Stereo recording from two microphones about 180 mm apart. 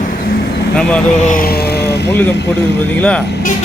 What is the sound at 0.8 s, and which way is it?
Speech, 5° left (ahead or behind).